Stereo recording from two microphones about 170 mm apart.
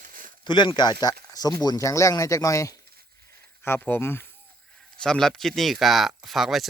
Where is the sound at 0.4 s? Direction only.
25° left (ahead or behind).